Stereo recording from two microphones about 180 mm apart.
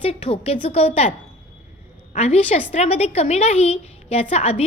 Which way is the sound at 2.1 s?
35° left (ahead or behind).